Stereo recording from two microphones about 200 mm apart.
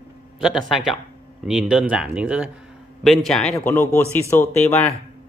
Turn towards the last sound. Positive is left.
turn(degrees=10)  # may be behind; listen again after turning